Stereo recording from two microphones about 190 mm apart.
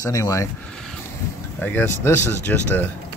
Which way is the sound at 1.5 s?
10° left (ahead or behind).